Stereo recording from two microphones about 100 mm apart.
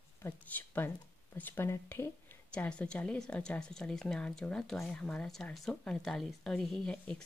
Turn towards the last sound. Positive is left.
turn(degrees=5)  # may be behind; listen again after turning